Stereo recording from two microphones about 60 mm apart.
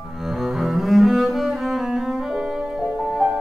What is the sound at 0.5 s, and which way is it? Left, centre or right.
Cello, centre.